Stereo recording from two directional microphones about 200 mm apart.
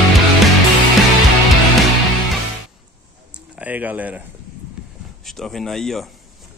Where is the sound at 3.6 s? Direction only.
10° right (ahead or behind).